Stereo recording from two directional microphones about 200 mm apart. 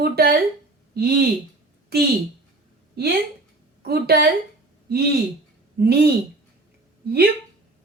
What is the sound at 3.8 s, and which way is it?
Speech, 50° right (ahead or behind).